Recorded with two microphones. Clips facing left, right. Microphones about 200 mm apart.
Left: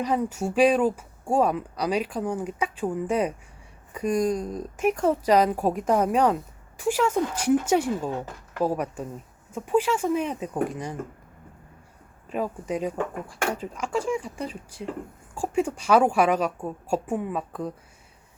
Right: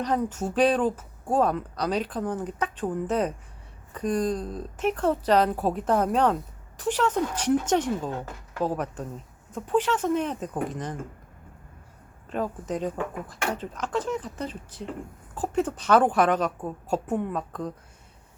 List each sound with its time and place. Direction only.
0.0 s speech: 10° left (ahead or behind)
12.3 s speech: 10° left (ahead or behind)